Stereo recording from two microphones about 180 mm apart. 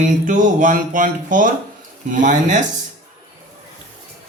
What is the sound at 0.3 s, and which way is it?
Speech, 45° right (ahead or behind).